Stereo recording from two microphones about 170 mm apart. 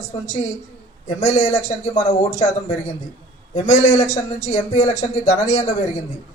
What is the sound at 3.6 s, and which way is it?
A man's voice, 40° left (ahead or behind).